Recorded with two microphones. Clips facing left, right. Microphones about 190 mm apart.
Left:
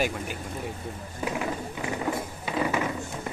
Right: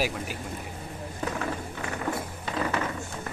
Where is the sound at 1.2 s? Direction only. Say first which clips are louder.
Left 2 dB; 15° left (ahead or behind).